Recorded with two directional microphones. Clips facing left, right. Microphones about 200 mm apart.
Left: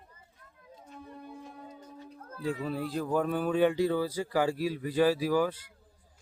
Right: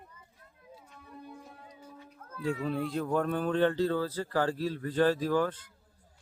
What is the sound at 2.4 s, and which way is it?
Speech, centre (ahead or behind).